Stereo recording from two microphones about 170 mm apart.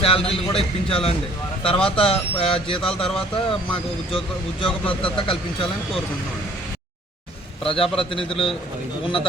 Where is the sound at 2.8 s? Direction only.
5° left (ahead or behind).